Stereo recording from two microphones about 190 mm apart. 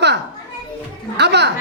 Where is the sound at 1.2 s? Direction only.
60° right (ahead or behind).